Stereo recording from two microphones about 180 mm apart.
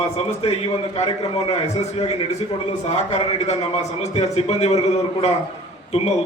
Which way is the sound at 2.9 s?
35° left (ahead or behind).